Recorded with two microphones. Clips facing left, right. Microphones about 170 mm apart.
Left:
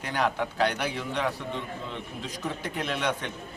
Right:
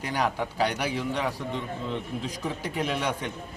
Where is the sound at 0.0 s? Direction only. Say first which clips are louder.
Even; 10° right (ahead or behind).